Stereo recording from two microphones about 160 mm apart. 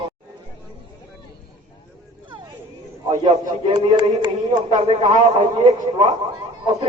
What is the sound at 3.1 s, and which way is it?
A man's voice, 25° right (ahead or behind).